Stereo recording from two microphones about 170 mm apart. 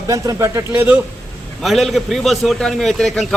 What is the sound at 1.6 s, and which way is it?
A man's voice, centre (ahead or behind).